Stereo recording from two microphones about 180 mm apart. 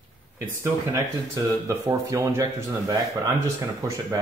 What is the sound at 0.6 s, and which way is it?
Speech, 15° right (ahead or behind).